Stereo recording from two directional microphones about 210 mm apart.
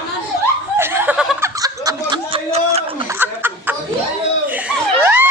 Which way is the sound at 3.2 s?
10° right (ahead or behind).